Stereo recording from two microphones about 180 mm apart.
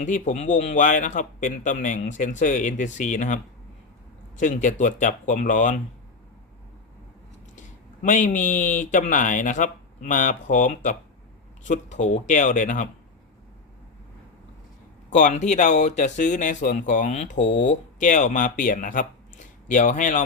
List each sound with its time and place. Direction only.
0.0 s speech: 45° left (ahead or behind)
8.0 s speech: 45° left (ahead or behind)
15.1 s speech: 40° left (ahead or behind)